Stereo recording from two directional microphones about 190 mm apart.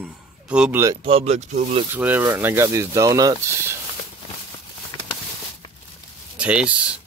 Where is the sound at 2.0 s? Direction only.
10° right (ahead or behind).